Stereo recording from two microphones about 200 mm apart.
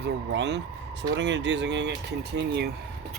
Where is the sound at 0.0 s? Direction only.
60° right (ahead or behind).